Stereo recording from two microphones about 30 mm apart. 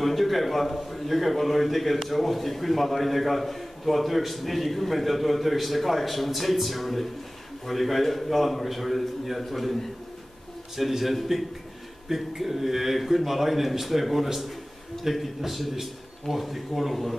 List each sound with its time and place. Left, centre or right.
0.0 s a man's voice: centre
10.8 s a man's voice: centre
12.2 s a man's voice: centre